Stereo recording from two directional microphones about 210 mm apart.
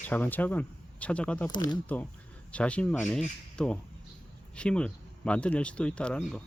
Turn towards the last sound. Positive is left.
turn(degrees=5)  # may be behind; listen again after turning